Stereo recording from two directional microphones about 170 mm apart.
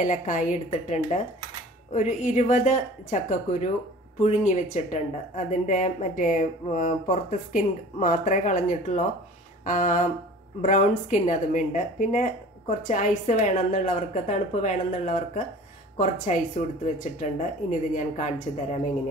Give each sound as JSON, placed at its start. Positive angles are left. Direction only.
{"t": 0.0, "sound": "a woman's voice", "side_deg": 45}
{"t": 16.8, "sound": "a woman's voice", "side_deg": 45}